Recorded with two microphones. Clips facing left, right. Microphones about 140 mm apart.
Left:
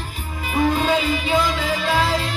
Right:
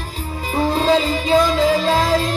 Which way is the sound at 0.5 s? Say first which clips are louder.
Right 3 dB; 35° right (ahead or behind).